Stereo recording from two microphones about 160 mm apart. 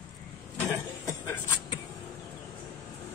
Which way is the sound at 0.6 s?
15° left (ahead or behind).